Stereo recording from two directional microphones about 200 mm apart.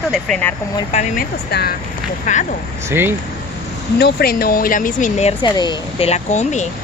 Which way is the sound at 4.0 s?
50° left (ahead or behind).